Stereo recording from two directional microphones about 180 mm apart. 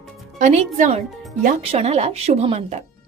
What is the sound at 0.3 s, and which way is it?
A woman's voice, 45° right (ahead or behind).